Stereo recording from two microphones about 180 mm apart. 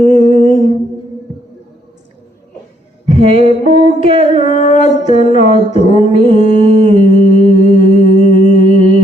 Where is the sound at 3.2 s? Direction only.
35° right (ahead or behind).